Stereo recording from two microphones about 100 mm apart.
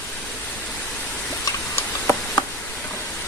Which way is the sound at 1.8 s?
20° left (ahead or behind).